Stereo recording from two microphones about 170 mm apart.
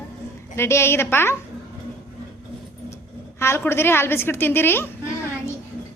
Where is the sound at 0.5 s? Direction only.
15° left (ahead or behind).